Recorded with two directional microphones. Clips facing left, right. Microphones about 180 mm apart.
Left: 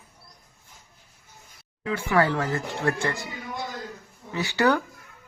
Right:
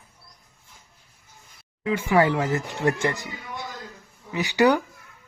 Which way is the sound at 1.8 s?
15° right (ahead or behind).